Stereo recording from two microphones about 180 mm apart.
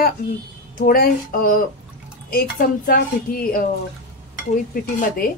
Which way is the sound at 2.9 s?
55° left (ahead or behind).